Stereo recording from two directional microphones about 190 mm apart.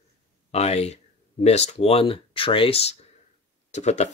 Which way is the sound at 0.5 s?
35° left (ahead or behind).